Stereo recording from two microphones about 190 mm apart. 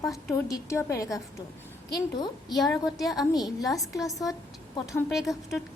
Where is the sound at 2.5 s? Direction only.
Centre (ahead or behind).